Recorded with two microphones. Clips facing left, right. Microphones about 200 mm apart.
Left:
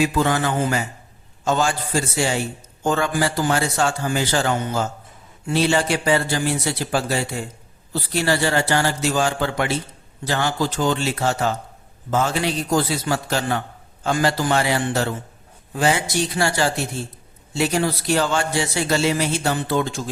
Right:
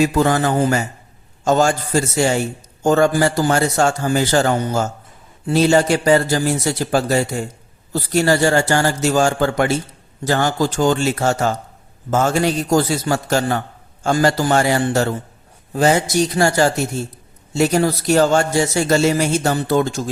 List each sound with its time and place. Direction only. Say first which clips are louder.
0.0 s a man's voice: right 4 dB; 40° right (ahead or behind)